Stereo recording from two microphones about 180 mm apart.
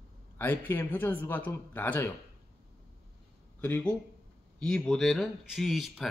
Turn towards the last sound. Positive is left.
turn(degrees=0)  # may be behind; listen again after turning